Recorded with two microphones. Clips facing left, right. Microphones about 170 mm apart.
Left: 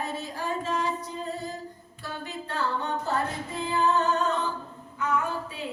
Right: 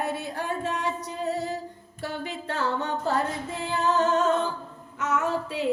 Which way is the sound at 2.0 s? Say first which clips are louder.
Right 4 dB; 85° right.